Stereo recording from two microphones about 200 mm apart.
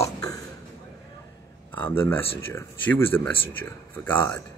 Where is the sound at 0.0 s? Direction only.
15° left (ahead or behind).